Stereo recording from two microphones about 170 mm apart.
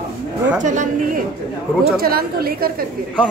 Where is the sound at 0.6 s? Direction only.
45° right (ahead or behind).